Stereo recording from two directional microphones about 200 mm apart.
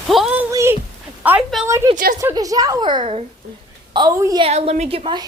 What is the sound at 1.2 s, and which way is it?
A woman's voice, 10° right (ahead or behind).